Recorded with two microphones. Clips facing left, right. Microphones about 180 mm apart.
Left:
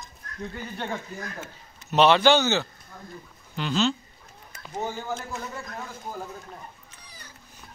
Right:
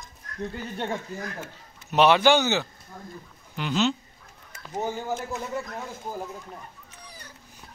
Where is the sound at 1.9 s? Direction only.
10° right (ahead or behind).